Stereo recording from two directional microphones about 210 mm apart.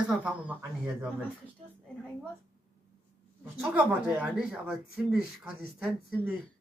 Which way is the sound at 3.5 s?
5° right (ahead or behind).